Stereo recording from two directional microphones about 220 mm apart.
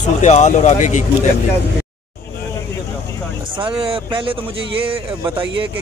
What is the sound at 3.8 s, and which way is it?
Speech, 25° right (ahead or behind).